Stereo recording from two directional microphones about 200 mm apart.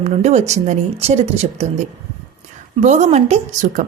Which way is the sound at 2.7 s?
35° right (ahead or behind).